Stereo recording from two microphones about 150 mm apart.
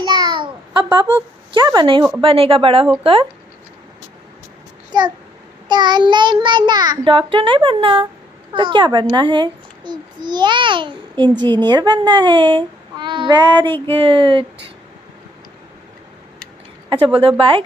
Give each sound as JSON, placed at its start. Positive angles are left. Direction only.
{"t": 0.0, "sound": "a sound", "side_deg": -30}
{"t": 1.5, "sound": "speech", "side_deg": -30}
{"t": 2.2, "sound": "child singing", "side_deg": -40}
{"t": 4.9, "sound": "babbling", "side_deg": -30}
{"t": 5.7, "sound": "child singing", "side_deg": -30}
{"t": 9.1, "sound": "a child's voice", "side_deg": -30}
{"t": 13.8, "sound": "child singing", "side_deg": -35}
{"t": 17.0, "sound": "child singing", "side_deg": -35}